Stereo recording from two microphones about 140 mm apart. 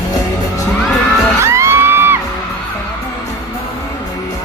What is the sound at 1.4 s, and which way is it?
Music, 20° right (ahead or behind).